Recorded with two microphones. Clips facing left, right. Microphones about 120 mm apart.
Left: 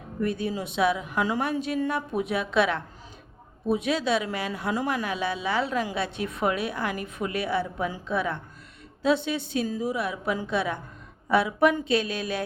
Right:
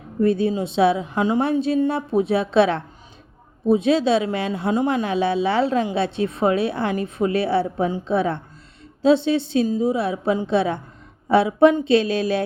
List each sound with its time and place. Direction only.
0.2 s speech: 25° right (ahead or behind)